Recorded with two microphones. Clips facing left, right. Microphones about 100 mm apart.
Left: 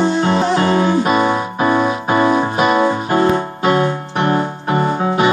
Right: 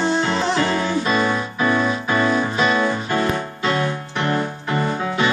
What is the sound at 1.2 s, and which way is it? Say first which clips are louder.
Keyboard: left 5 dB; 35° left (ahead or behind).